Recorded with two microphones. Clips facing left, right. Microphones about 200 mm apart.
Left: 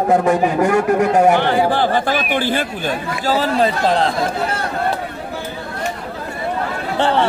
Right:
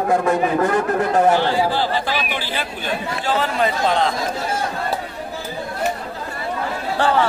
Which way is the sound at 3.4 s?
35° left (ahead or behind).